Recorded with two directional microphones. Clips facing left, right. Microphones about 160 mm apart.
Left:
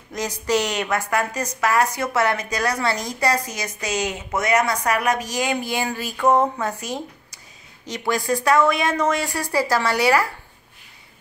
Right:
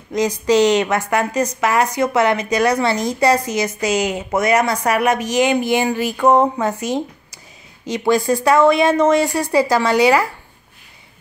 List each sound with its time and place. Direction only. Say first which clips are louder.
0.5 s a woman's voice: right 8 dB; 90° right
0.8 s speech: right 4 dB; 20° right (ahead or behind)
6.8 s speech: right 8 dB; centre (ahead or behind)
7.9 s speech: right 6 dB; 25° right (ahead or behind)